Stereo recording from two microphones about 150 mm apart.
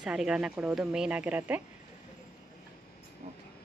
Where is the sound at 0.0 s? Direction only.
5° right (ahead or behind).